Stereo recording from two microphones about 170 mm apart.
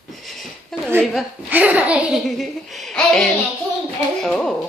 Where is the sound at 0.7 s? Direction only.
Centre (ahead or behind).